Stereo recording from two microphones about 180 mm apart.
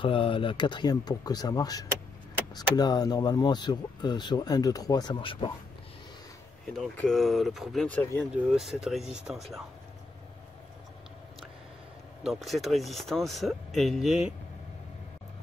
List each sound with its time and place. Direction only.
0.0 s speech: 30° left (ahead or behind)
6.7 s speech: 5° left (ahead or behind)
12.2 s speech: centre (ahead or behind)